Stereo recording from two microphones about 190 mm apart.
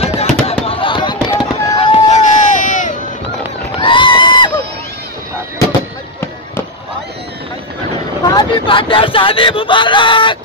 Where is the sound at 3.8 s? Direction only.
25° left (ahead or behind).